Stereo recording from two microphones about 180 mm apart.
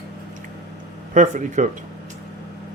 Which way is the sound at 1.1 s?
45° right (ahead or behind).